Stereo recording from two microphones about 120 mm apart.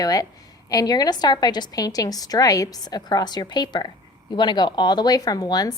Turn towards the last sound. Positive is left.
turn(degrees=35)  # may be behind; listen again after turning